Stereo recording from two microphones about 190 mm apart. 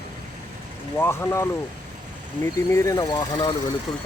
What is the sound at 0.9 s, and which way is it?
Speech, 10° left (ahead or behind).